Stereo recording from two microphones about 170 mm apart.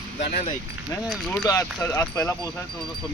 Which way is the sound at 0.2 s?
60° left (ahead or behind).